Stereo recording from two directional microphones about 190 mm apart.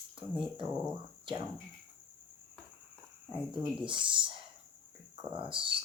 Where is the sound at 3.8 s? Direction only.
25° right (ahead or behind).